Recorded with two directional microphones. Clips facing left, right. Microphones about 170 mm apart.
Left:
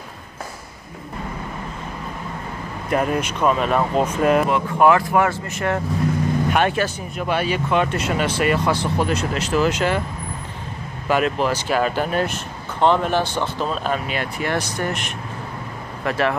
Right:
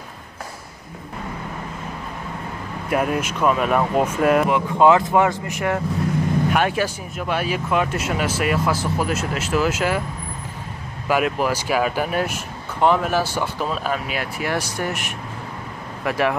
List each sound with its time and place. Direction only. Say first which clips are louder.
2.9 s speech: left 1 dB; 5° right (ahead or behind)
4.5 s speech: right 1 dB; 20° right (ahead or behind)
11.1 s speech: left 1 dB; 10° right (ahead or behind)